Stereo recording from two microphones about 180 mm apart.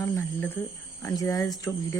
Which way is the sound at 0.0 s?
10° left (ahead or behind).